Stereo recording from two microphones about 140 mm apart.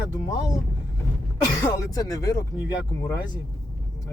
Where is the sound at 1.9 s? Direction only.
25° left (ahead or behind).